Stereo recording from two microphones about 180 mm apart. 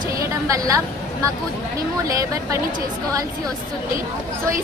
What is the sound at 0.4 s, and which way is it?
Speech, 20° right (ahead or behind).